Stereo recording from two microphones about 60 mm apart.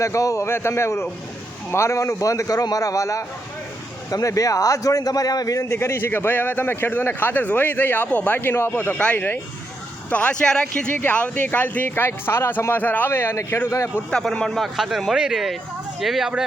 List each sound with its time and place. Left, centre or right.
0.0 s a man's voice: left
0.4 s a man's voice: left
5.7 s a man's voice: left
10.1 s speech: left
12.0 s a man's voice: left
13.7 s a man's voice: left
14.4 s speech: centre
14.8 s speech: centre